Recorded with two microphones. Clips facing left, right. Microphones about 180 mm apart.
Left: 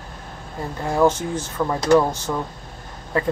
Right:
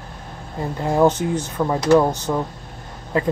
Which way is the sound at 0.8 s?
20° right (ahead or behind).